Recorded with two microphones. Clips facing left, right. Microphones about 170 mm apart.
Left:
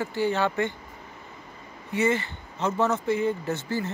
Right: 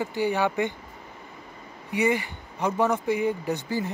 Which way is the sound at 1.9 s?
15° right (ahead or behind).